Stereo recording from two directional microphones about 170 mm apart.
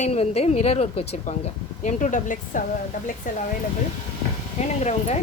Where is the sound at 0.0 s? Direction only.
40° left (ahead or behind).